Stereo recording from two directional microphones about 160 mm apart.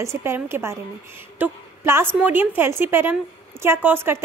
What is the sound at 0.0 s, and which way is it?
A woman's voice, 15° right (ahead or behind).